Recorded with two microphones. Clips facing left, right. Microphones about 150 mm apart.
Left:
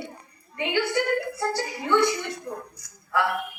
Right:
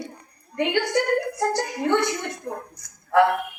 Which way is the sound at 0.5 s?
60° right (ahead or behind).